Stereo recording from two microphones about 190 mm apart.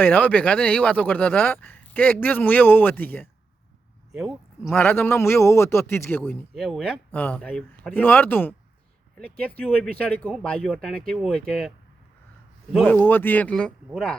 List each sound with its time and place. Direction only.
0.0 s speech: 10° left (ahead or behind)
4.1 s speech: centre (ahead or behind)
4.7 s speech: 10° left (ahead or behind)
12.7 s speech: 10° left (ahead or behind)